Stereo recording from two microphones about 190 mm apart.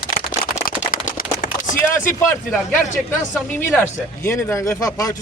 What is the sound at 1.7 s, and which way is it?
Speech, 15° left (ahead or behind).